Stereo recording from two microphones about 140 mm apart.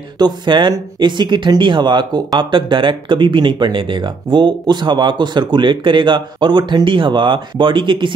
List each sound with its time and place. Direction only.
0.2 s speech: 35° right (ahead or behind)